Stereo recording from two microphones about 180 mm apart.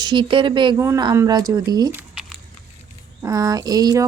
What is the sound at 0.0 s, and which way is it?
Speech, 25° right (ahead or behind).